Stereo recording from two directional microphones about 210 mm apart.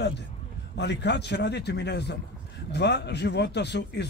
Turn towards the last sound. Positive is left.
turn(degrees=55)  # may be behind; listen again after turning